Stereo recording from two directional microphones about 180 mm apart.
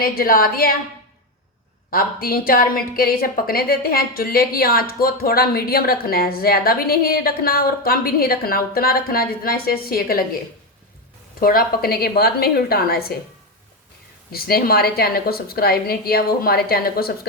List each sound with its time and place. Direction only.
0.0 s a woman's voice: 55° left (ahead or behind)
1.9 s a woman's voice: 55° left (ahead or behind)
11.3 s a woman's voice: 55° left (ahead or behind)
14.3 s a woman's voice: 60° left (ahead or behind)